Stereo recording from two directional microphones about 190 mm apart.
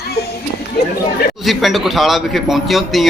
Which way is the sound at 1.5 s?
Centre (ahead or behind).